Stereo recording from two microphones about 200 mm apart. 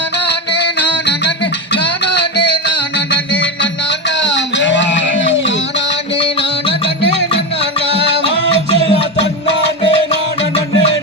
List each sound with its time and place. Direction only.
0.3 s music: 55° left (ahead or behind)
3.4 s a sound: 60° left (ahead or behind)
8.1 s music: 60° left (ahead or behind)
8.5 s music: 30° right (ahead or behind)